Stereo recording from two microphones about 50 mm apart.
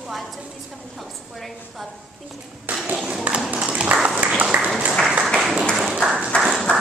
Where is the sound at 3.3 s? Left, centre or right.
Right.